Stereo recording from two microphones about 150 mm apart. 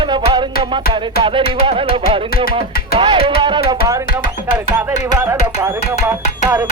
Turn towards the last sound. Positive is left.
turn(degrees=-15)  # may be behind; listen again after turning